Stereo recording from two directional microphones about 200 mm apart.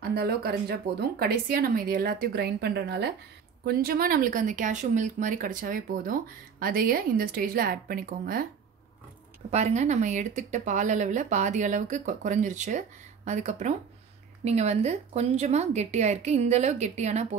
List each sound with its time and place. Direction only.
0.1 s speech: 50° right (ahead or behind)
9.5 s speech: 35° right (ahead or behind)